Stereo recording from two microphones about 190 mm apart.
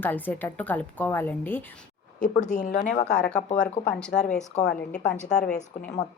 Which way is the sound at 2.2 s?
40° left (ahead or behind).